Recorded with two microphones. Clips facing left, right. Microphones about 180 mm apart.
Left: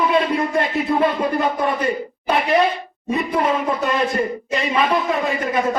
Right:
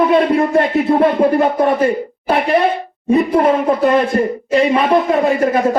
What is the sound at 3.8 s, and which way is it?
A man's voice, 55° right (ahead or behind).